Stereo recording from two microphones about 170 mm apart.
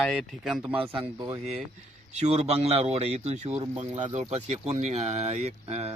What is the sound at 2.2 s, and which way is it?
Speech, 35° right (ahead or behind).